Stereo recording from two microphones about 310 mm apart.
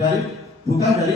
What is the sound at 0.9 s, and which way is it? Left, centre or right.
Speech, centre.